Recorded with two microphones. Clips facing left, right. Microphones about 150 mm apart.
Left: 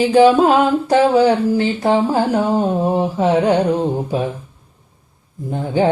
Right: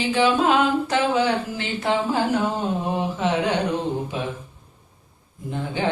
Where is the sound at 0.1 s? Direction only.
40° left (ahead or behind).